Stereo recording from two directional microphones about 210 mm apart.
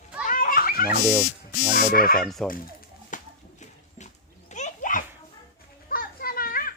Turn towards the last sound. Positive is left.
turn(degrees=45)  # may be behind; listen again after turning